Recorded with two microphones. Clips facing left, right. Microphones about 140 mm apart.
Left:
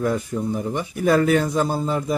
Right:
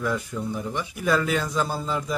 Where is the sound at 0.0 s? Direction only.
45° left (ahead or behind).